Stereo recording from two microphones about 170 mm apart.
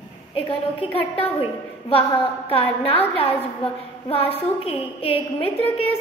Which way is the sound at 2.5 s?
35° left (ahead or behind).